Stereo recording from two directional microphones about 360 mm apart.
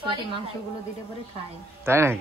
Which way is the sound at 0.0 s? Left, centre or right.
Centre.